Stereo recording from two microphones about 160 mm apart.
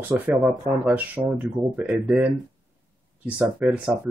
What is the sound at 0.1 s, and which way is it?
Speech, 10° right (ahead or behind).